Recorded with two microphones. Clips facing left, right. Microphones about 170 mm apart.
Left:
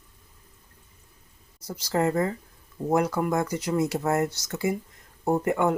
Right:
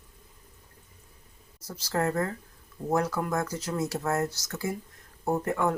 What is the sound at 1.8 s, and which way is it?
Speech, 15° left (ahead or behind).